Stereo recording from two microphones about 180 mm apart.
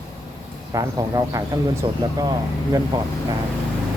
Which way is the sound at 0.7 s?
20° right (ahead or behind).